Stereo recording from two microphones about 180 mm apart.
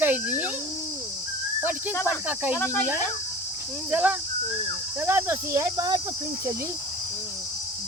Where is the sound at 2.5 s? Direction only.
15° left (ahead or behind).